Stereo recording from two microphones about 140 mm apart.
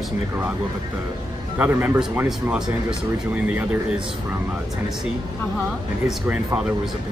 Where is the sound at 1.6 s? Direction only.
15° right (ahead or behind).